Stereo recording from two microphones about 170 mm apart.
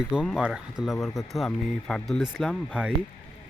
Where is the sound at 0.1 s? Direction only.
5° right (ahead or behind).